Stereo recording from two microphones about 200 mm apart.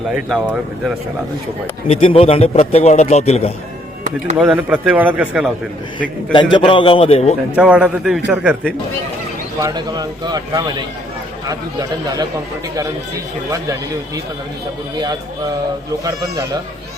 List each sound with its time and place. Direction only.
0.1 s speech: centre (ahead or behind)
1.9 s a man's voice: 30° left (ahead or behind)
4.4 s a man's voice: 5° right (ahead or behind)
6.3 s a man's voice: 25° left (ahead or behind)
7.5 s a man's voice: 5° right (ahead or behind)
9.6 s a man's voice: 20° right (ahead or behind)
14.9 s a man's voice: 20° right (ahead or behind)